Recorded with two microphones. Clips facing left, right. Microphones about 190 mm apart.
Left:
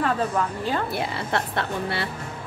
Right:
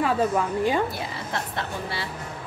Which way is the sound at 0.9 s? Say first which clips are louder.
Left 5 dB; 65° left (ahead or behind).